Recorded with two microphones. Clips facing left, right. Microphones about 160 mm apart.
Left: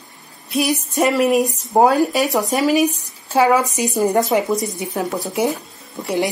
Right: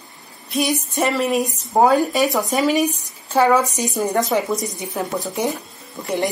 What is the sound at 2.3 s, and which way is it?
Speech, 40° left (ahead or behind).